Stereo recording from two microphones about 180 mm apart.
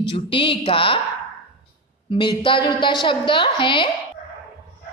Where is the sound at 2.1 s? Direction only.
25° left (ahead or behind).